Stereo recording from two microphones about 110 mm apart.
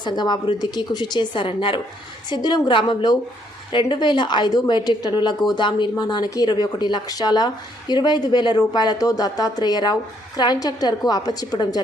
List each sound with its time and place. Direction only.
0.0 s a woman's voice: 45° left (ahead or behind)